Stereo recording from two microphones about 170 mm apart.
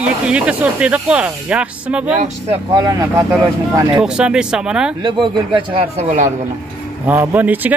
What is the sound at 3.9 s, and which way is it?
Speech, 5° right (ahead or behind).